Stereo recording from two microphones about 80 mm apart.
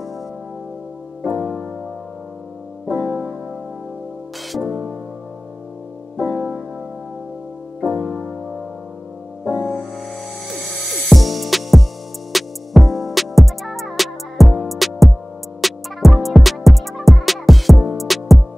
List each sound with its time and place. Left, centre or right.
1.3 s music: centre
2.9 s music: centre
4.5 s music: centre
6.1 s music: centre
7.8 s music: centre
9.6 s music: centre